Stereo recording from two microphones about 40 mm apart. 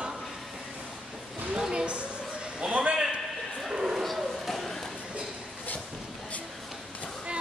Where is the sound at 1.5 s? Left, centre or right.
Centre.